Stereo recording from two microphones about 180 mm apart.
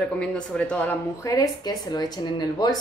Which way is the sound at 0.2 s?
5° left (ahead or behind).